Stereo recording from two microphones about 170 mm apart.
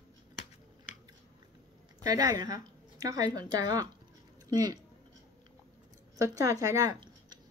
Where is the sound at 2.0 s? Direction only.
20° right (ahead or behind).